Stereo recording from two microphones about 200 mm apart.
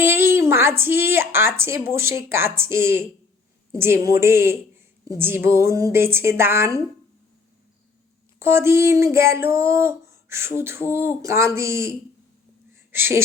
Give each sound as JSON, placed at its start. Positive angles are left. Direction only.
{"t": 0.0, "sound": "speech", "side_deg": -10}
{"t": 8.4, "sound": "speech", "side_deg": -10}